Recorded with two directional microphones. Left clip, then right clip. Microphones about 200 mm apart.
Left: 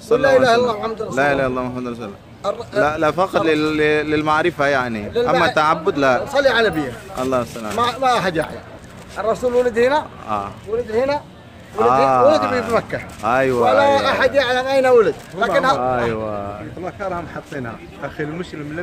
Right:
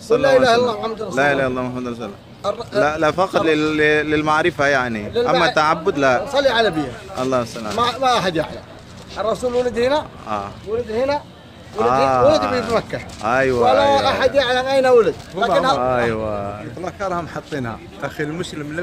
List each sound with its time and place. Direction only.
0.1 s a man's voice: 5° left (ahead or behind)
15.4 s speech: 55° right (ahead or behind)
15.8 s a man's voice: 5° right (ahead or behind)
16.8 s speech: 45° right (ahead or behind)